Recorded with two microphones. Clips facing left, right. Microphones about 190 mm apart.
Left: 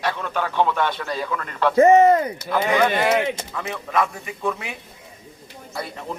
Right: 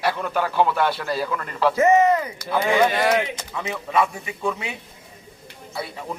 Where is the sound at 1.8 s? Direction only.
35° left (ahead or behind).